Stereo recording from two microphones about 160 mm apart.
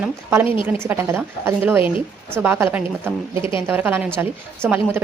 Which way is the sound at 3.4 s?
35° left (ahead or behind).